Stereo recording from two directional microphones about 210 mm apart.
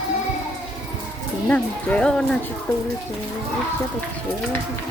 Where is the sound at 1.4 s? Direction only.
5° left (ahead or behind).